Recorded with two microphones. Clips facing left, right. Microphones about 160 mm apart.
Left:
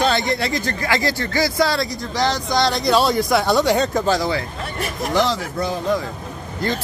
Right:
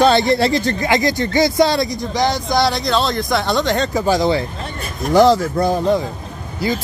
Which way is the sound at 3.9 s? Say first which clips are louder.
Right 2 dB; 10° right (ahead or behind).